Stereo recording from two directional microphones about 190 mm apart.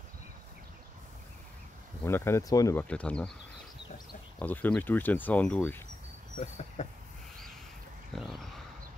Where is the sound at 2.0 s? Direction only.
15° left (ahead or behind).